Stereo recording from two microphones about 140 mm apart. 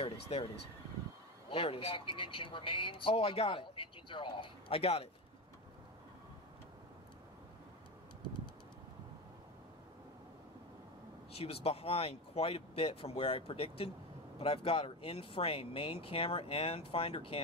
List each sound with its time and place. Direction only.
0.0 s a sound: 40° left (ahead or behind)
1.5 s speech: 45° left (ahead or behind)
11.3 s speech: 45° left (ahead or behind)